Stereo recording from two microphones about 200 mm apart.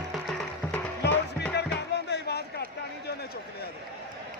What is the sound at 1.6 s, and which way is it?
Music, 55° left (ahead or behind).